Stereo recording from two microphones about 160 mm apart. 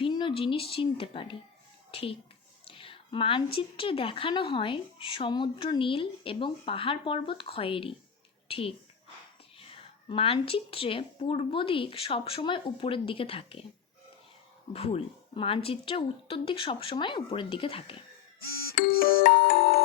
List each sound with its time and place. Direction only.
0.0 s a child's voice: 30° left (ahead or behind)
14.7 s a woman's voice: 40° left (ahead or behind)
18.7 s music: 70° left (ahead or behind)